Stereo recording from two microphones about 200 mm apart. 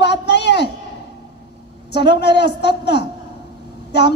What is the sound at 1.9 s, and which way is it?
A man's voice, 55° left (ahead or behind).